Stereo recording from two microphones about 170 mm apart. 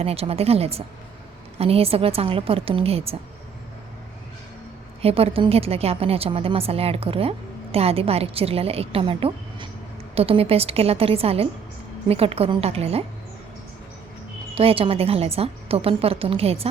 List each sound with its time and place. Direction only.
0.0 s a woman's voice: 35° right (ahead or behind)
5.0 s a woman's voice: 35° right (ahead or behind)
14.5 s a woman's voice: 35° right (ahead or behind)